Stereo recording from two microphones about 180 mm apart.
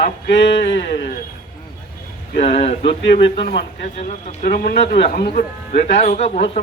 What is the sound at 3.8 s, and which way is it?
Speech, 40° left (ahead or behind).